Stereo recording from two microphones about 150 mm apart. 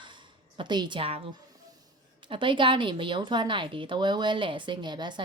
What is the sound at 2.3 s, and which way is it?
Speech, 35° right (ahead or behind).